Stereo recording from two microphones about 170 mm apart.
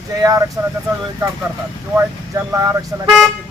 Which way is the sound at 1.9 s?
15° right (ahead or behind).